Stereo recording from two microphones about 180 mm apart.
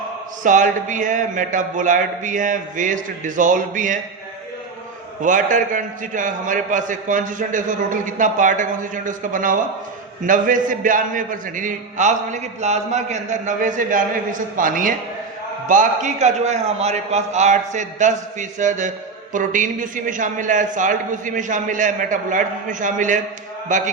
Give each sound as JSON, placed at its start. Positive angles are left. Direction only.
{"t": 0.4, "sound": "a man's voice", "side_deg": -45}
{"t": 5.2, "sound": "a man's voice", "side_deg": -45}